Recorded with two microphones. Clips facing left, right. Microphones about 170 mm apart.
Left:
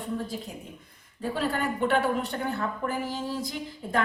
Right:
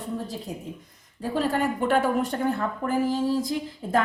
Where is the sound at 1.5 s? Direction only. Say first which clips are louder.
Right 2 dB; 45° right (ahead or behind).